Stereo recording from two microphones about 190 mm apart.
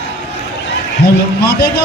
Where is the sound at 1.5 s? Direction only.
55° left (ahead or behind).